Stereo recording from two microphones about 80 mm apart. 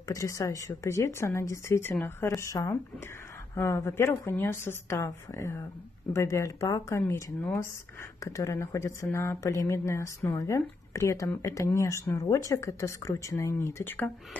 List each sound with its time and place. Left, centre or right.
0.1 s speech: left
7.0 s speech: left
8.2 s speech: left